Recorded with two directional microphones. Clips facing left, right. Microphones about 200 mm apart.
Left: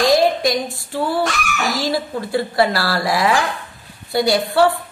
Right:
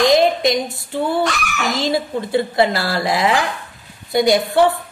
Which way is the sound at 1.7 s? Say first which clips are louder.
Right 3 dB; 20° right (ahead or behind).